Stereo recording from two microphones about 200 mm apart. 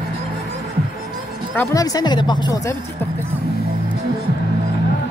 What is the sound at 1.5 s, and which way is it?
Speech, 20° left (ahead or behind).